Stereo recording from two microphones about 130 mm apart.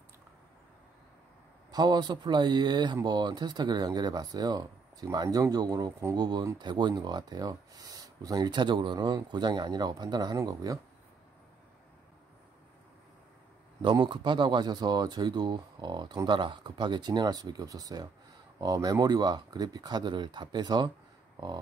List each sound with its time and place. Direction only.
1.7 s speech: 30° right (ahead or behind)
13.8 s speech: 40° right (ahead or behind)